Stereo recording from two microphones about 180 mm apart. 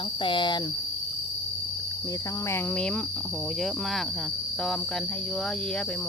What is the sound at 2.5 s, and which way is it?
Speech, 5° left (ahead or behind).